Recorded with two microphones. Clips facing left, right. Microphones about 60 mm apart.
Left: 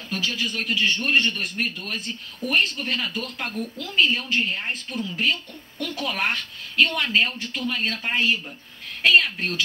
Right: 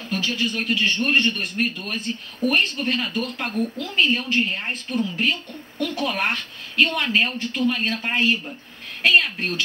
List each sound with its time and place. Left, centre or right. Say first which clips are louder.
0.1 s a woman's voice: right 3 dB; centre
3.7 s a woman's voice: left 2 dB; centre